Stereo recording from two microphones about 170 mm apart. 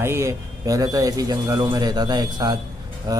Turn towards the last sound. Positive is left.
turn(degrees=-20)  # may be behind; listen again after turning